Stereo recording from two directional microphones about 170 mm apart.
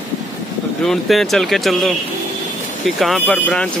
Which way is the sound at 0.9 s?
Centre (ahead or behind).